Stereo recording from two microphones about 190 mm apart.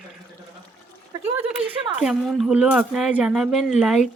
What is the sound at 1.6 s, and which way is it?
Speech, 5° right (ahead or behind).